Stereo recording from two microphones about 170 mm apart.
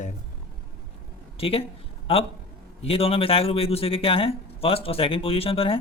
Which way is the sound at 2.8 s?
35° left (ahead or behind).